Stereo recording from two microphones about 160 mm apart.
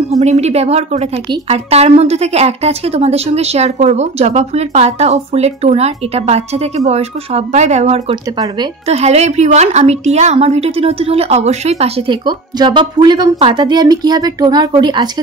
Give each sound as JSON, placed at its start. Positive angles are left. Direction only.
{"t": 0.1, "sound": "a woman's voice", "side_deg": -45}